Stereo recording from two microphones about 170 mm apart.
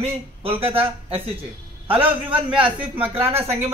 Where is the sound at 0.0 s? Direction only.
35° right (ahead or behind).